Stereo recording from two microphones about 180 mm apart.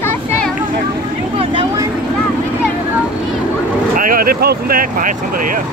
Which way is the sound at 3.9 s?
50° right (ahead or behind).